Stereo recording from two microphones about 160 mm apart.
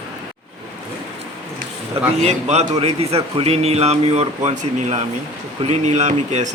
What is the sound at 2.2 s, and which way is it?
Speech, 45° right (ahead or behind).